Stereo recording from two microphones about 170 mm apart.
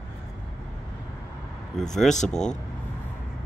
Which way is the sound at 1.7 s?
Centre (ahead or behind).